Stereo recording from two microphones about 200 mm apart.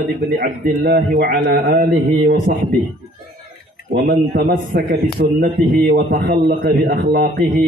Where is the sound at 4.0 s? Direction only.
35° right (ahead or behind); by 6.0 s 55° right (ahead or behind).